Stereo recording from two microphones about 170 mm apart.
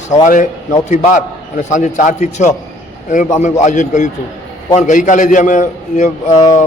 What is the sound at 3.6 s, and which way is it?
A man's voice, 45° left (ahead or behind).